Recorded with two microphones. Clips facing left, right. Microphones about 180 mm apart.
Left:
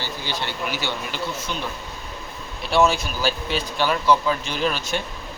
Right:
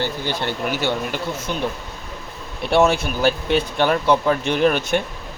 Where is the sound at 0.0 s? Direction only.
55° right (ahead or behind).